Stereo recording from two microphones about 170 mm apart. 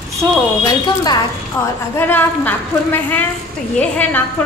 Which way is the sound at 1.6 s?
15° left (ahead or behind).